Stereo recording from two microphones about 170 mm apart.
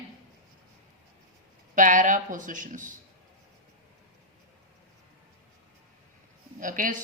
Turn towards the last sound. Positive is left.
turn(degrees=-50)  # may be behind; listen again after turning